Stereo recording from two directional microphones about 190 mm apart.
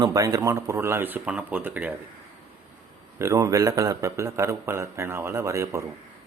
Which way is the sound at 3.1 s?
15° right (ahead or behind).